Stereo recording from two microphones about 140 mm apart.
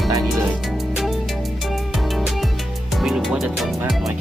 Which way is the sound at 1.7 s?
Centre (ahead or behind).